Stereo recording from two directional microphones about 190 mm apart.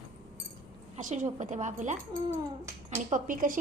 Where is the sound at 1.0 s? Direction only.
40° right (ahead or behind).